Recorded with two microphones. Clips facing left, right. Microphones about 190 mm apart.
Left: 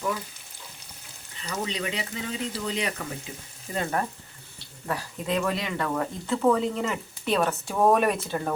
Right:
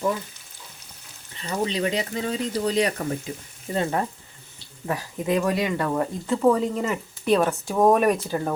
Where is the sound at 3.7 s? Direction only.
30° right (ahead or behind).